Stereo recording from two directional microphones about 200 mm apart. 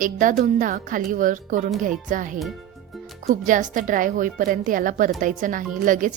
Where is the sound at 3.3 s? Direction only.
40° right (ahead or behind).